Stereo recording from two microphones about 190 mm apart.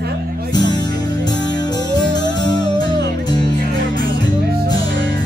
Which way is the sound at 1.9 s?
20° left (ahead or behind).